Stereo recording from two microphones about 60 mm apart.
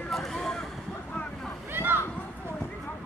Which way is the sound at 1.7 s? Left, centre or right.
Right.